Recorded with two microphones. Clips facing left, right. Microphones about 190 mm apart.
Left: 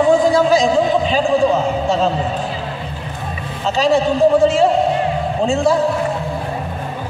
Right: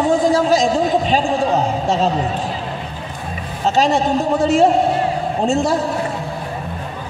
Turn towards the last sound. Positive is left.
turn(degrees=-40)  # may be behind; listen again after turning